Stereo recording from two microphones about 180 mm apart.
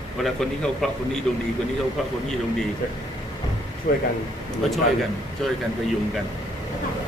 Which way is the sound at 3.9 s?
50° left (ahead or behind).